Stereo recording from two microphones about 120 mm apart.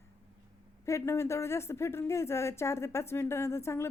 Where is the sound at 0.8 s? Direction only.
25° left (ahead or behind).